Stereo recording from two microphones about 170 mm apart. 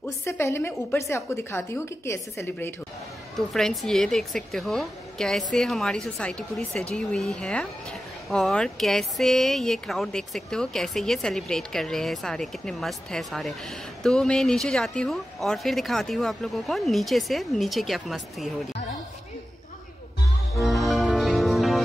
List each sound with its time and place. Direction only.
0.2 s a woman's voice: 15° left (ahead or behind)
3.3 s speech: centre (ahead or behind)
20.6 s music: centre (ahead or behind)